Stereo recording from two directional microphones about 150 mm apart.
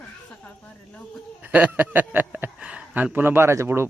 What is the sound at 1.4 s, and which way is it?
Speech, 10° right (ahead or behind).